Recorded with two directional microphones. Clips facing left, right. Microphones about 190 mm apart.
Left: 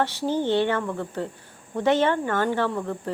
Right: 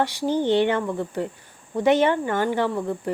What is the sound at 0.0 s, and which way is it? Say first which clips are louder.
Speech: right 2 dB; 15° right (ahead or behind).